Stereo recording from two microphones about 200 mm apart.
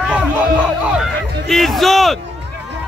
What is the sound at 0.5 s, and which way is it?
Music, 5° right (ahead or behind).